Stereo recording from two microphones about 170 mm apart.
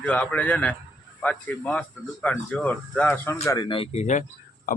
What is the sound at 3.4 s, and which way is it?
Speech, 25° left (ahead or behind).